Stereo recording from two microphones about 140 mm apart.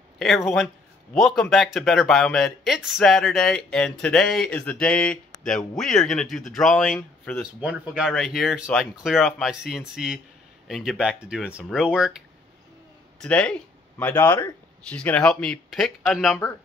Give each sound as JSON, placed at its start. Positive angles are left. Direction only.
{"t": 1.1, "sound": "speech", "side_deg": 0}
{"t": 7.6, "sound": "speech", "side_deg": -5}
{"t": 13.2, "sound": "speech", "side_deg": 5}